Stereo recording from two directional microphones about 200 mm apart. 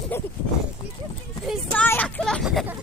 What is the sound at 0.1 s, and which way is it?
Speech, 10° left (ahead or behind).